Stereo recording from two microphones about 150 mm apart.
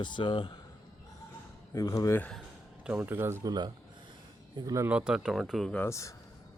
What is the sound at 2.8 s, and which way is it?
Speech, 10° right (ahead or behind).